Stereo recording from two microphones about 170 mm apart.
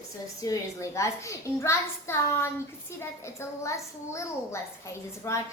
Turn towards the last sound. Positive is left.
turn(degrees=15)  # may be behind; listen again after turning